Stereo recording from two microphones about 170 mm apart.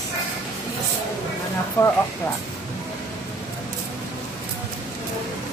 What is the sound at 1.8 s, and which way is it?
Speech, 15° left (ahead or behind).